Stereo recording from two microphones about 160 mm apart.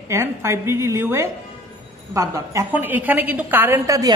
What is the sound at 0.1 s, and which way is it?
A woman's voice, 15° right (ahead or behind).